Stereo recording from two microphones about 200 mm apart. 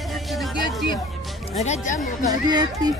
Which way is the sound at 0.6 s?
25° left (ahead or behind).